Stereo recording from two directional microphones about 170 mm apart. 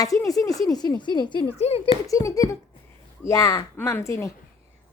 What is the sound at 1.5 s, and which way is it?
Speech, 35° left (ahead or behind).